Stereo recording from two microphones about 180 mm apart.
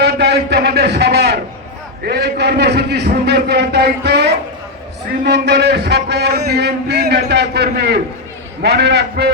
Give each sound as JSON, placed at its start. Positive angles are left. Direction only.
{"t": 0.0, "sound": "a man's voice", "side_deg": -65}